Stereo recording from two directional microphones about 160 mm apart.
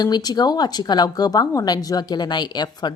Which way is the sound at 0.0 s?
25° left (ahead or behind).